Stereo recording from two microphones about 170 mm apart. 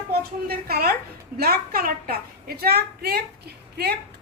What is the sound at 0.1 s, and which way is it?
A woman's voice, 65° right (ahead or behind).